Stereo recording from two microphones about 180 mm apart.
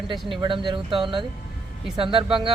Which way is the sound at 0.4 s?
25° right (ahead or behind).